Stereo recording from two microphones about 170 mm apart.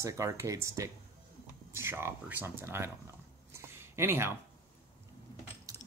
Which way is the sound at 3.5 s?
15° right (ahead or behind).